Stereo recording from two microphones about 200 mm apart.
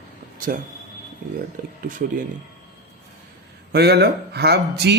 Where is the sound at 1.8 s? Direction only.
45° right (ahead or behind).